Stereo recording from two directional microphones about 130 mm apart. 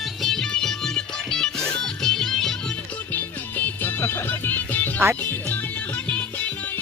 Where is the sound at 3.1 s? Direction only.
15° left (ahead or behind).